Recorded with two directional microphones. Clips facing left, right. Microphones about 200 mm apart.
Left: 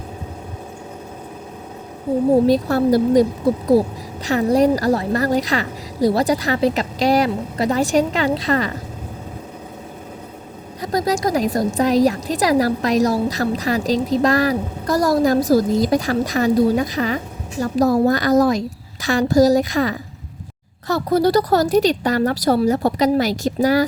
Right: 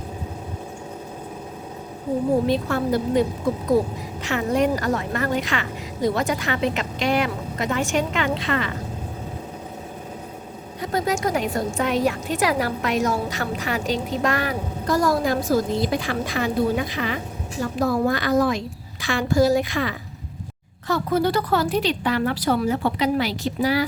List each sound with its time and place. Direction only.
2.5 s a woman's voice: 35° left (ahead or behind)
10.8 s a woman's voice: 40° left (ahead or behind)